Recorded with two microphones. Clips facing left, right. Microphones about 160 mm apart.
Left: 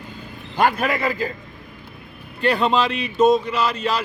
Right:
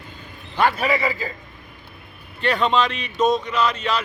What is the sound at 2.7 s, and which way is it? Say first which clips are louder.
Speech: even; 35° left (ahead or behind).